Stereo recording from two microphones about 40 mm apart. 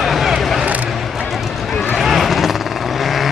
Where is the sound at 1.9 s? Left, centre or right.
Centre.